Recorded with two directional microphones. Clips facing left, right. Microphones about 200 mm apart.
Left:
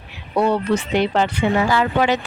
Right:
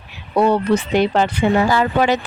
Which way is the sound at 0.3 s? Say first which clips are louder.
Right 3 dB; 40° right (ahead or behind).